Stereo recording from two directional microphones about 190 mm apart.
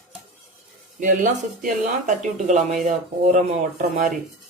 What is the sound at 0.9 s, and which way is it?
Speech, 45° right (ahead or behind).